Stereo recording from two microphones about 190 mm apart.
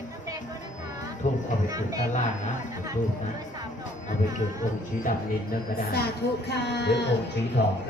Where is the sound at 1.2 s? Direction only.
40° left (ahead or behind).